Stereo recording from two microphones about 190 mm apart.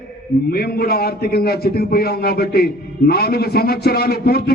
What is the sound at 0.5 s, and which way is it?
A man's voice, 55° left (ahead or behind).